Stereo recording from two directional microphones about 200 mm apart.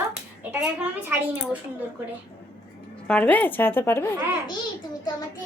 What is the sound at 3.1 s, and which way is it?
A woman's voice, 10° left (ahead or behind).